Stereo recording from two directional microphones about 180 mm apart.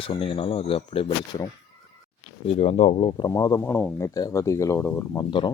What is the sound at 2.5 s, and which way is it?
Speech, 35° left (ahead or behind).